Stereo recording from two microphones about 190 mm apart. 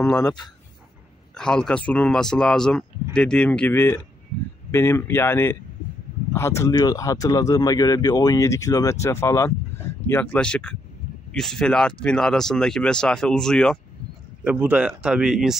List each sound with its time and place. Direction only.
0.1 s speech: 20° left (ahead or behind)
1.3 s speech: 5° left (ahead or behind)